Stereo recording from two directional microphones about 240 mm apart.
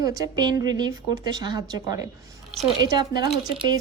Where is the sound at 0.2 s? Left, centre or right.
Centre.